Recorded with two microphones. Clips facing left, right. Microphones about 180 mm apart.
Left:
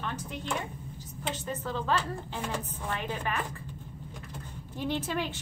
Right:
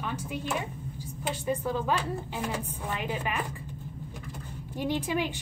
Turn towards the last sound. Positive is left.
turn(degrees=-15)  # may be behind; listen again after turning